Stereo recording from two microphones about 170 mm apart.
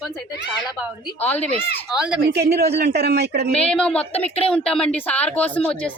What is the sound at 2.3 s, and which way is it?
A man's voice, 75° right (ahead or behind).